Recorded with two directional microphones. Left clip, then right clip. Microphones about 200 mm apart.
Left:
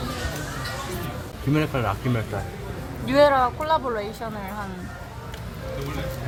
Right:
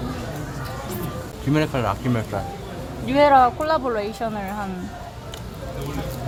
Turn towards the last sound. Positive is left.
turn(degrees=-15)  # may be behind; listen again after turning